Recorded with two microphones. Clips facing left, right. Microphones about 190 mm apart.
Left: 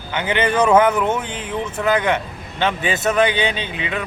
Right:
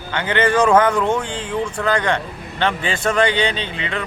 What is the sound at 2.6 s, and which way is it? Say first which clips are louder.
Speech: left 1 dB; 20° left (ahead or behind).